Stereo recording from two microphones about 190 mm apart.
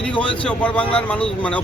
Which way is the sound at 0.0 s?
5° left (ahead or behind).